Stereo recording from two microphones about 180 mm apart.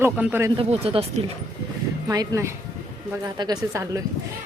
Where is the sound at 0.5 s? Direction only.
30° right (ahead or behind).